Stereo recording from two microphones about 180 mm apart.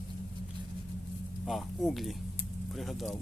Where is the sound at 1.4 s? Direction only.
Centre (ahead or behind).